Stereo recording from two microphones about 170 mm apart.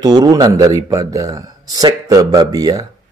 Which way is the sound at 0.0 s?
25° right (ahead or behind).